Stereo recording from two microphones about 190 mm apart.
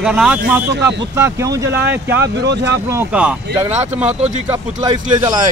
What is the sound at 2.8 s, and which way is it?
Speech, 10° right (ahead or behind).